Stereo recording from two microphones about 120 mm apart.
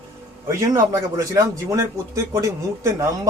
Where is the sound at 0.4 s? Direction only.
25° right (ahead or behind).